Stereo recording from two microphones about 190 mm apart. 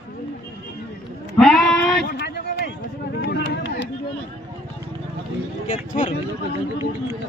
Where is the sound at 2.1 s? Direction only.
60° left (ahead or behind).